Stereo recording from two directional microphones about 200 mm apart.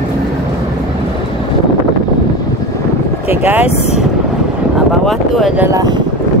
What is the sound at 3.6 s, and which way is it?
Speech, 30° left (ahead or behind).